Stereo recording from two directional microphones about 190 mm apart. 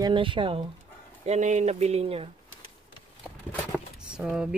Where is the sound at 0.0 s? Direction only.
25° right (ahead or behind).